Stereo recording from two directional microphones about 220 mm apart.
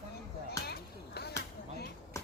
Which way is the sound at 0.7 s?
45° left (ahead or behind).